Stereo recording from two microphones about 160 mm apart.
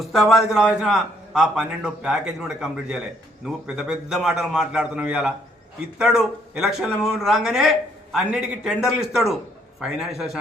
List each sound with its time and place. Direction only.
0.0 s speech: centre (ahead or behind)